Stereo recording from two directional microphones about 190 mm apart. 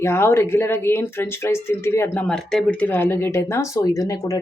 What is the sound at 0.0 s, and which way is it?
Speech, 15° left (ahead or behind).